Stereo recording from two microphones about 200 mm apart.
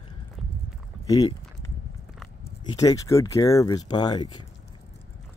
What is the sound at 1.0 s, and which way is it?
Speech, 20° left (ahead or behind).